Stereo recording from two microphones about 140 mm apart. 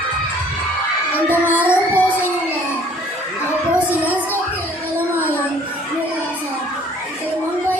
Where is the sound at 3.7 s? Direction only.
10° right (ahead or behind).